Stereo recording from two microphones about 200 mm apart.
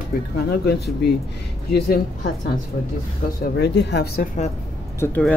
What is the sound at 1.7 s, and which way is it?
Speech, 50° left (ahead or behind).